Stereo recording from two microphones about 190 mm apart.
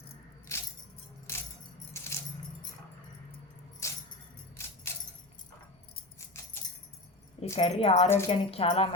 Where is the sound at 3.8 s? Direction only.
15° left (ahead or behind).